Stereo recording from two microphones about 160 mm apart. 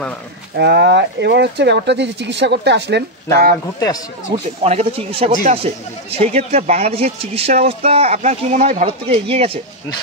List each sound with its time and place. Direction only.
0.6 s speech: 90° right
4.6 s speech: 40° right (ahead or behind)